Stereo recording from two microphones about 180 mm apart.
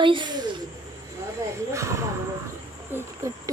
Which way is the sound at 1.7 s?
15° right (ahead or behind).